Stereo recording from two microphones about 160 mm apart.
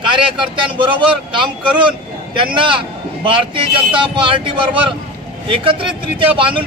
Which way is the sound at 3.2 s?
35° right (ahead or behind).